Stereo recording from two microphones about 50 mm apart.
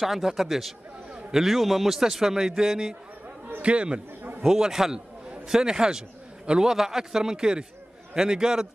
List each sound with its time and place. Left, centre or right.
0.0 s a man's voice: centre
3.6 s a man's voice: right
4.4 s a man's voice: centre